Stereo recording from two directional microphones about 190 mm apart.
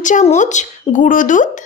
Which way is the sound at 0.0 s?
40° left (ahead or behind).